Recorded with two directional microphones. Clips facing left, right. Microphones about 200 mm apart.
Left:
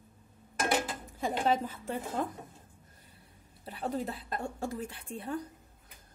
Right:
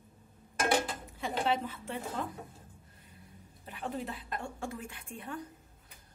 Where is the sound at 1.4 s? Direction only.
40° left (ahead or behind).